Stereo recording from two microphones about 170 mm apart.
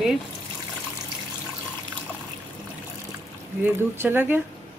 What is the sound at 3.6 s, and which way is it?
Speech, 10° right (ahead or behind).